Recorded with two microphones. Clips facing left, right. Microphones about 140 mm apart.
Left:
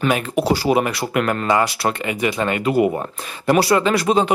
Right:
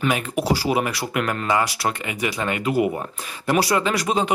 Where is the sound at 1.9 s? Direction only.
55° left (ahead or behind).